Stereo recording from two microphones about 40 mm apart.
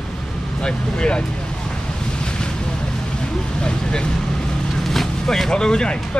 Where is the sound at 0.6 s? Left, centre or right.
Left.